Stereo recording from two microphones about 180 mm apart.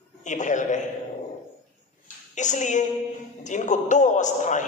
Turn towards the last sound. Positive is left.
turn(degrees=45)  # may be behind; listen again after turning